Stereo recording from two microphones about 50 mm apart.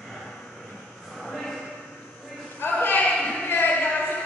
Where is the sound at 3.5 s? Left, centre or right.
Left.